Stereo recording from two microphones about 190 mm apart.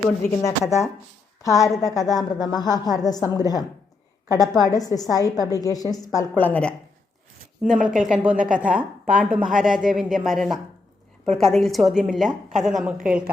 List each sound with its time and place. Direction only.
1.4 s a woman's voice: 15° left (ahead or behind)
7.6 s a woman's voice: 5° right (ahead or behind)